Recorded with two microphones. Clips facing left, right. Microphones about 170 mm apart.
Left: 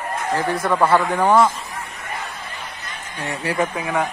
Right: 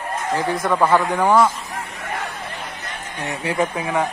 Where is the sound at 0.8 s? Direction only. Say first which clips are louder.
Even; 15° right (ahead or behind).